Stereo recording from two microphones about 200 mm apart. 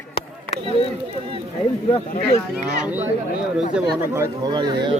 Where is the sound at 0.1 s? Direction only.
30° left (ahead or behind).